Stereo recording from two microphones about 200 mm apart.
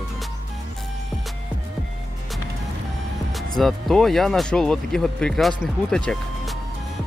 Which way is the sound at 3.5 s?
Centre (ahead or behind).